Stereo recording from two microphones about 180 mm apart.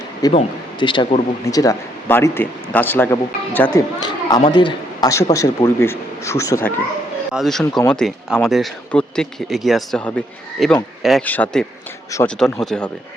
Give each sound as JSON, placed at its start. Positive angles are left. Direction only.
{"t": 0.2, "sound": "speech", "side_deg": 25}
{"t": 7.3, "sound": "speech", "side_deg": 0}